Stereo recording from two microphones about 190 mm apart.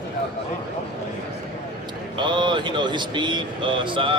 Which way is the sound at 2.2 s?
25° right (ahead or behind).